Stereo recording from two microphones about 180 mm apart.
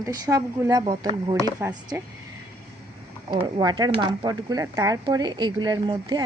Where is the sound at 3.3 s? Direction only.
25° right (ahead or behind).